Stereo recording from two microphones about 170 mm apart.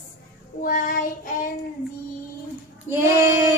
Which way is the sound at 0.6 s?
55° left (ahead or behind).